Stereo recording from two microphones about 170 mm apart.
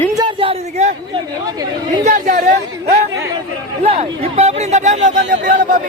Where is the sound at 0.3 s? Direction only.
40° right (ahead or behind).